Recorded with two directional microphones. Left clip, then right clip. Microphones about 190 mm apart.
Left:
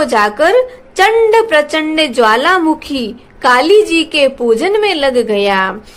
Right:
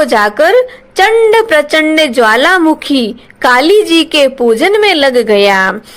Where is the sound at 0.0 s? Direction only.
20° right (ahead or behind).